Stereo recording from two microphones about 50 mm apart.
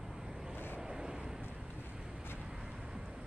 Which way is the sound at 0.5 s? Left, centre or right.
Left.